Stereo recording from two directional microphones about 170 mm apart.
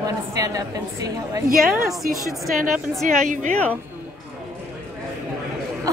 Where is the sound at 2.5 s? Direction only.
55° right (ahead or behind).